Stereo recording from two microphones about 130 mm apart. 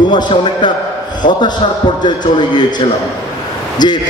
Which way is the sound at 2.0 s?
35° left (ahead or behind).